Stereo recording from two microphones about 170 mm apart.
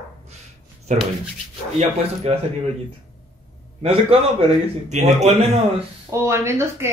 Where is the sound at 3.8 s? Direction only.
35° right (ahead or behind).